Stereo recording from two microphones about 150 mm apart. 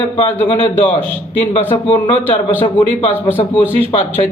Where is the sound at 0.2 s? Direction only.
35° left (ahead or behind).